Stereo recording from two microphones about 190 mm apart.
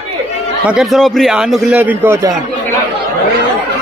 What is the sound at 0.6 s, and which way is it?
A man's voice, centre (ahead or behind).